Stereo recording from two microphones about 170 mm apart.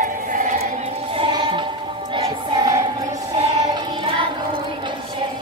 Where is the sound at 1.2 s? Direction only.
30° right (ahead or behind).